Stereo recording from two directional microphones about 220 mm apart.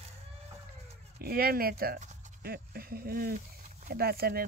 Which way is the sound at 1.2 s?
45° right (ahead or behind).